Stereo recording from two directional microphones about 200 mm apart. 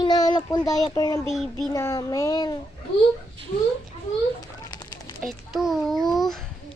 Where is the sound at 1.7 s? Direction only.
15° left (ahead or behind).